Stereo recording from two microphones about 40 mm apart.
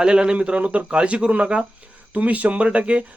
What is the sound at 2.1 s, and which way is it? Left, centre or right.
Speech, right.